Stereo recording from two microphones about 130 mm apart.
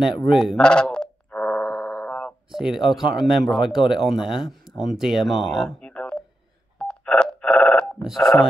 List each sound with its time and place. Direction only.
0.2 s a sound: centre (ahead or behind)
2.5 s speech: 5° right (ahead or behind)
6.8 s telephone dialing: 5° left (ahead or behind)
8.0 s speech: centre (ahead or behind)